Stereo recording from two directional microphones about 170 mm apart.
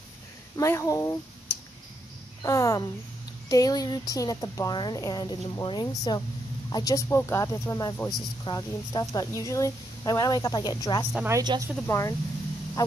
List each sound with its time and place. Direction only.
0.6 s speech: 20° left (ahead or behind)
2.4 s speech: 20° left (ahead or behind)
11.1 s a woman's voice: 15° right (ahead or behind)
11.4 s speech: 25° right (ahead or behind)
11.8 s speech: 15° left (ahead or behind)